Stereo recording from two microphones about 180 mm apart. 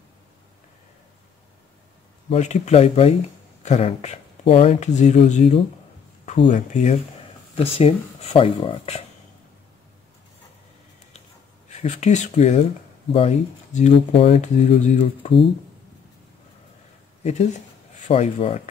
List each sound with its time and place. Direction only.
2.2 s speech: 40° left (ahead or behind)
6.2 s speech: 30° left (ahead or behind)
6.5 s speech: 40° left (ahead or behind)
11.8 s speech: 40° left (ahead or behind)
17.2 s speech: 40° left (ahead or behind)